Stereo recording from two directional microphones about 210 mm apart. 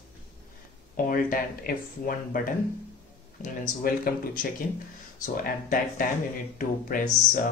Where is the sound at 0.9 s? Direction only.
40° left (ahead or behind).